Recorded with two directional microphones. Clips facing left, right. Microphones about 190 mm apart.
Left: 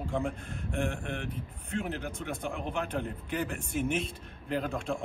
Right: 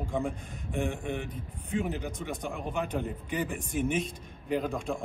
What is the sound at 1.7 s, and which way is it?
A man's voice, 10° right (ahead or behind).